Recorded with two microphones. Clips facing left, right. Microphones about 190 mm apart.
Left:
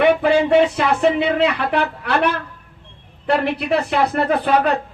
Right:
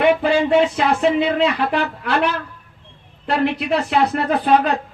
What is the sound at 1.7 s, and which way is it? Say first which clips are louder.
Speech: left 1 dB; 55° left (ahead or behind).